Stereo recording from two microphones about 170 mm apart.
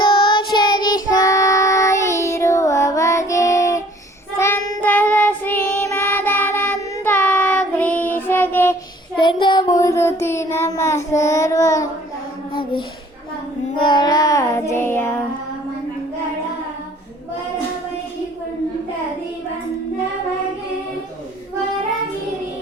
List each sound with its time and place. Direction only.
0.0 s child singing: 30° left (ahead or behind); by 8.7 s 15° left (ahead or behind)
9.1 s child singing: 25° left (ahead or behind)
13.7 s child singing: 25° left (ahead or behind)